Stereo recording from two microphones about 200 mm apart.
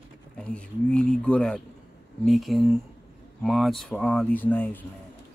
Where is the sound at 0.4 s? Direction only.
5° left (ahead or behind).